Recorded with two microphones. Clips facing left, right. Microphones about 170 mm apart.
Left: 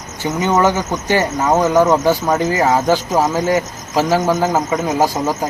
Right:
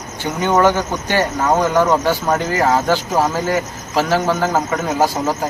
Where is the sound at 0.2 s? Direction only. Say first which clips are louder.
Even; 10° left (ahead or behind).